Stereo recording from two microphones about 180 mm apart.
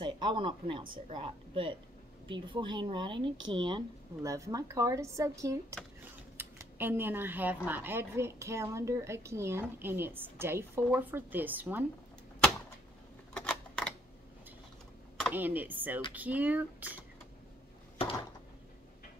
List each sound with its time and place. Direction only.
0.0 s speech: 25° right (ahead or behind)
13.3 s camera: 5° left (ahead or behind)
15.3 s speech: 10° right (ahead or behind)